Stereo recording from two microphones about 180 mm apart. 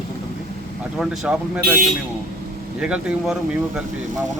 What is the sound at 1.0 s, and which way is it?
Speech, 5° right (ahead or behind).